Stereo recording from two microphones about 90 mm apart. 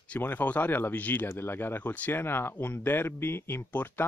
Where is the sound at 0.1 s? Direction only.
20° left (ahead or behind).